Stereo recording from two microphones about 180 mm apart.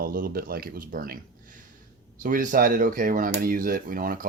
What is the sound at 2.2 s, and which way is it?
Speech, 50° right (ahead or behind).